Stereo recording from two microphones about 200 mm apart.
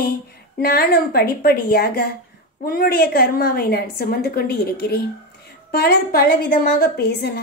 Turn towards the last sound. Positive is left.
turn(degrees=55)  # may be behind; listen again after turning